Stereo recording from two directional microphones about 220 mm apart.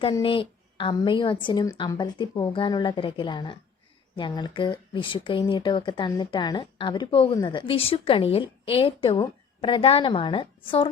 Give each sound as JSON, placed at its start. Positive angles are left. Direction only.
{"t": 0.0, "sound": "speech", "side_deg": 25}